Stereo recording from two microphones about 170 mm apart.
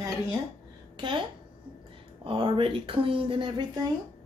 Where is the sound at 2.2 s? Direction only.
30° right (ahead or behind).